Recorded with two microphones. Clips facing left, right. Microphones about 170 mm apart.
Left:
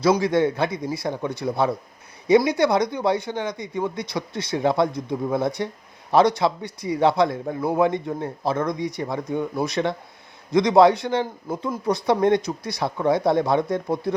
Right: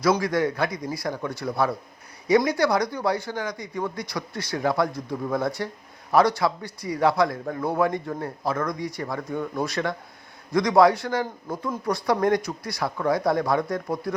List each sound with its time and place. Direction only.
0.2 s a man's voice: 25° left (ahead or behind)